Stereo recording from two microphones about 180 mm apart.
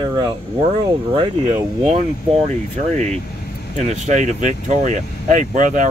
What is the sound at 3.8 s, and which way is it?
Speech, 40° right (ahead or behind).